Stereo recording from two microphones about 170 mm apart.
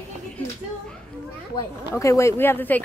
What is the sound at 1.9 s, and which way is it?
Speech, 15° left (ahead or behind).